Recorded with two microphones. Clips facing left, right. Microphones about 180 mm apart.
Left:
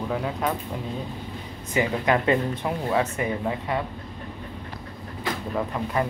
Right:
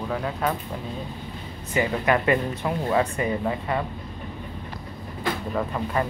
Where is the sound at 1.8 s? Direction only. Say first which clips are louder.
Even; 20° left (ahead or behind).